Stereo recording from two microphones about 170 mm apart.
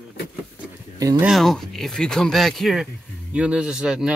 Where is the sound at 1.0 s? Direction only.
20° right (ahead or behind).